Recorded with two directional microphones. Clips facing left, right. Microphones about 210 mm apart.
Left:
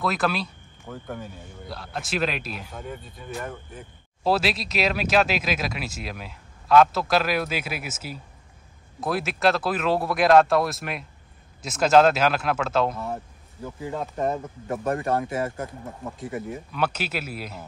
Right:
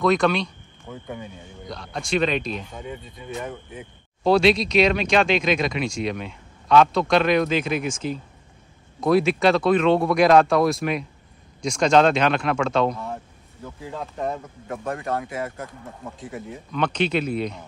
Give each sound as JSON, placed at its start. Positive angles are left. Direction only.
{"t": 0.0, "sound": "a man's voice", "side_deg": 5}
{"t": 13.7, "sound": "speech", "side_deg": 15}
{"t": 14.7, "sound": "speech", "side_deg": 30}
{"t": 16.2, "sound": "a man's voice", "side_deg": 0}